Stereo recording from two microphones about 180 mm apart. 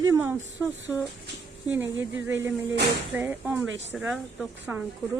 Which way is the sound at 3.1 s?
10° right (ahead or behind).